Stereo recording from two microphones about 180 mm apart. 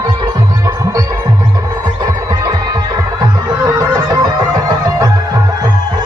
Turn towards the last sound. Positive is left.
turn(degrees=-20)  # may be behind; listen again after turning